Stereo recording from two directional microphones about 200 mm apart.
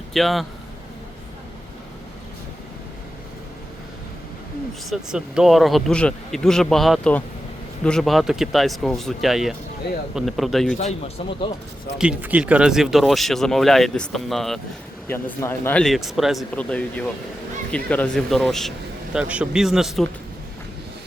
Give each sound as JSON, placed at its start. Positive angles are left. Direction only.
{"t": 0.1, "sound": "speech", "side_deg": 0}
{"t": 4.9, "sound": "speech", "side_deg": -5}
{"t": 9.8, "sound": "speech", "side_deg": 55}
{"t": 10.2, "sound": "speech", "side_deg": 0}
{"t": 10.8, "sound": "speech", "side_deg": 30}
{"t": 11.9, "sound": "speech", "side_deg": -5}
{"t": 15.0, "sound": "speech", "side_deg": 10}